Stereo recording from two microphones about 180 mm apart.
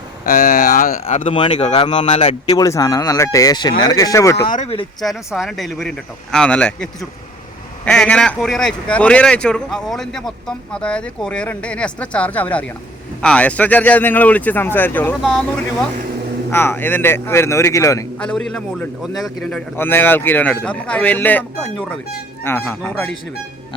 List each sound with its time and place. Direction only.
0.3 s speech: 45° left (ahead or behind)
1.0 s speech: 35° left (ahead or behind)
1.4 s speech: 25° left (ahead or behind)
2.5 s speech: 20° left (ahead or behind)
4.4 s speech: 45° left (ahead or behind)
4.9 s speech: centre (ahead or behind)
7.9 s speech: 5° left (ahead or behind)
16.5 s speech: 10° left (ahead or behind)
18.2 s speech: 5° left (ahead or behind)
19.7 s speech: 10° left (ahead or behind)